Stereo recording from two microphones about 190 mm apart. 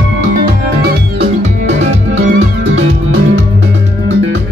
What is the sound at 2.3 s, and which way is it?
Music, 75° right (ahead or behind).